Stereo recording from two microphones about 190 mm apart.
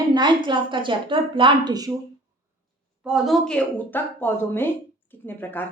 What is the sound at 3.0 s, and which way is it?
Speech, centre (ahead or behind).